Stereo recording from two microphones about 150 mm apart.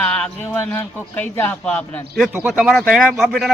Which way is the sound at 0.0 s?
10° left (ahead or behind).